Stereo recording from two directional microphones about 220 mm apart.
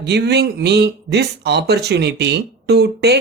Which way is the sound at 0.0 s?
50° right (ahead or behind).